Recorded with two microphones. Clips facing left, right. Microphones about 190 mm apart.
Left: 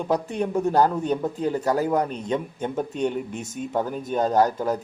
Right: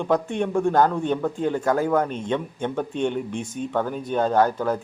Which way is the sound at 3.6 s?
5° left (ahead or behind).